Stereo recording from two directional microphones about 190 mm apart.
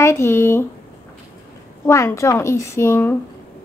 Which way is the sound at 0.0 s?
15° left (ahead or behind).